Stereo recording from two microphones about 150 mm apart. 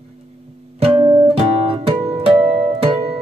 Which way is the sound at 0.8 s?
40° right (ahead or behind).